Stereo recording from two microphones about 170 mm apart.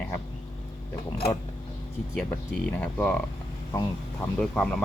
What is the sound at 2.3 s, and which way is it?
Speech, 10° left (ahead or behind).